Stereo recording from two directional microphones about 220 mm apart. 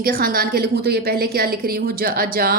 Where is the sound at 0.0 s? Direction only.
40° right (ahead or behind).